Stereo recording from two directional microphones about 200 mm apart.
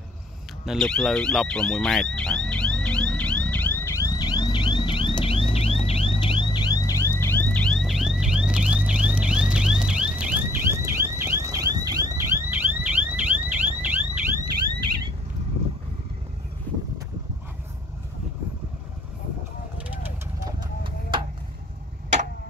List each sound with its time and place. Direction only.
0.7 s speech: centre (ahead or behind)
2.1 s car alarm: 5° left (ahead or behind)
20.4 s vehicle: 25° right (ahead or behind)